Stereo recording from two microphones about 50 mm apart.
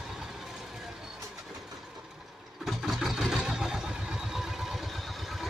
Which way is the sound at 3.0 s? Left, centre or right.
Centre.